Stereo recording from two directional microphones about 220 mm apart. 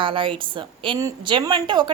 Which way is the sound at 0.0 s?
25° right (ahead or behind).